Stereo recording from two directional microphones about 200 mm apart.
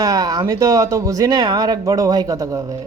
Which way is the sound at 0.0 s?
20° right (ahead or behind).